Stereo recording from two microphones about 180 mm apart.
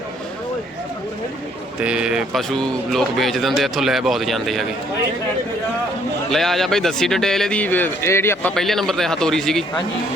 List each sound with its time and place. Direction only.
1.8 s speech: 5° right (ahead or behind)
6.3 s speech: centre (ahead or behind)